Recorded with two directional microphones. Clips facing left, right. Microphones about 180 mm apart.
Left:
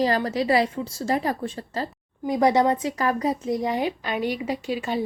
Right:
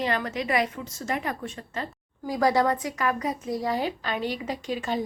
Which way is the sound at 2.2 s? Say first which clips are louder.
Left 3 dB; 20° left (ahead or behind).